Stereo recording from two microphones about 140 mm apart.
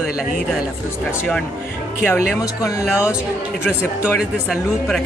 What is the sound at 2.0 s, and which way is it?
Speech, 15° left (ahead or behind).